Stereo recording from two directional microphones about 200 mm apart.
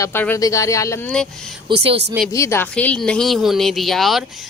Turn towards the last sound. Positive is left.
turn(degrees=0)  # may be behind; listen again after turning